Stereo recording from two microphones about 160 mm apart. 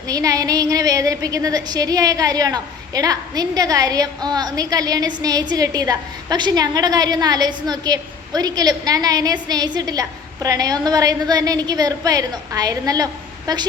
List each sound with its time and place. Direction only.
0.1 s a woman's voice: 20° right (ahead or behind)